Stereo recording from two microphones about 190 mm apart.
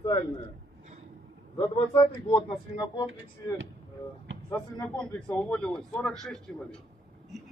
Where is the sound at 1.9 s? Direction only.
20° left (ahead or behind).